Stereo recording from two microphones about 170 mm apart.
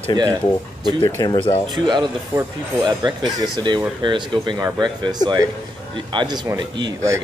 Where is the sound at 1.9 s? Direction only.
25° right (ahead or behind).